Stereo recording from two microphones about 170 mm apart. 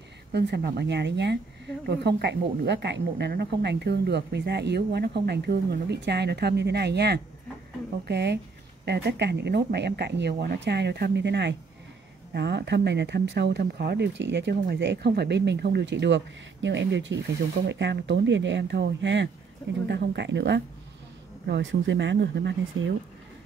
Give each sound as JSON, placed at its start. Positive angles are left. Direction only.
{"t": 0.3, "sound": "a woman's voice", "side_deg": -75}
{"t": 12.4, "sound": "speech", "side_deg": -80}
{"t": 19.9, "sound": "a woman's voice", "side_deg": -80}